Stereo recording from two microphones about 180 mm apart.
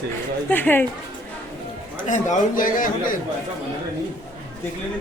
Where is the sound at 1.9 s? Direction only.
40° left (ahead or behind).